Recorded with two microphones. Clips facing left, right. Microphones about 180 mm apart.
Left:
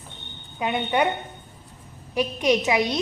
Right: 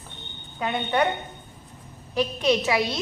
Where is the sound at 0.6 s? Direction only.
15° left (ahead or behind).